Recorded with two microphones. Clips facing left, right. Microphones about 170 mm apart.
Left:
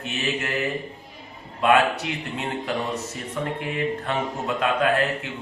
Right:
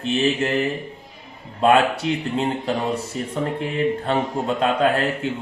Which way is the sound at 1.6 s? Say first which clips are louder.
Right 3 dB; 30° right (ahead or behind).